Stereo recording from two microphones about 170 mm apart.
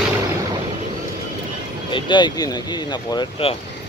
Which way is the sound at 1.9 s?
25° left (ahead or behind).